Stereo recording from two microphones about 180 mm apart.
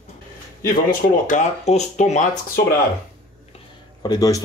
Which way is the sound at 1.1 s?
45° left (ahead or behind).